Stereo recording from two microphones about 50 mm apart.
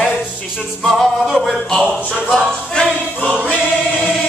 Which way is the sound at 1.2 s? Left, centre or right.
Centre.